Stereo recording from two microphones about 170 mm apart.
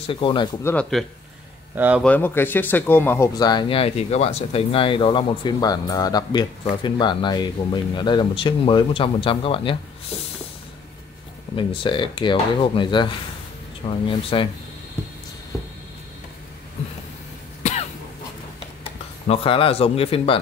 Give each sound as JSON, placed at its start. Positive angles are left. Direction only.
{"t": 0.1, "sound": "speech", "side_deg": 30}
{"t": 0.7, "sound": "speech", "side_deg": 5}
{"t": 1.8, "sound": "speech", "side_deg": -10}
{"t": 2.0, "sound": "speech", "side_deg": 10}
{"t": 11.5, "sound": "speech", "side_deg": 30}
{"t": 17.6, "sound": "cough", "side_deg": 45}
{"t": 19.2, "sound": "speech", "side_deg": 35}